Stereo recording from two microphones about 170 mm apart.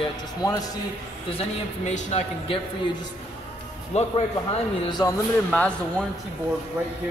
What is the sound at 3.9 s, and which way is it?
Speech, 40° left (ahead or behind).